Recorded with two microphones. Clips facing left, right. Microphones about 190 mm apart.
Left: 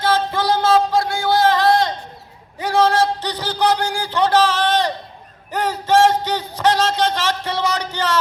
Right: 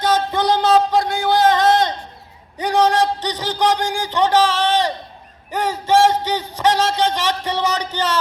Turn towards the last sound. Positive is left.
turn(degrees=-15)  # may be behind; listen again after turning